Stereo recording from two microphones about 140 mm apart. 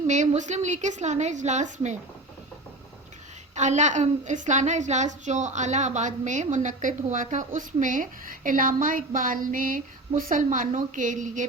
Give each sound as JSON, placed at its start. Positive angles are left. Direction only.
{"t": 0.1, "sound": "a woman's voice", "side_deg": -60}
{"t": 3.5, "sound": "a woman's voice", "side_deg": -55}